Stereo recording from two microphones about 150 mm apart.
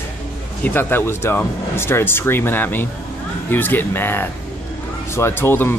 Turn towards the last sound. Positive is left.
turn(degrees=15)  # may be behind; listen again after turning